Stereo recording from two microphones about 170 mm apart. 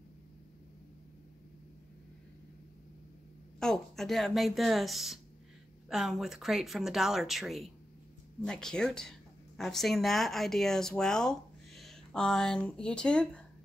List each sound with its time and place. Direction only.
3.5 s speech: 5° left (ahead or behind)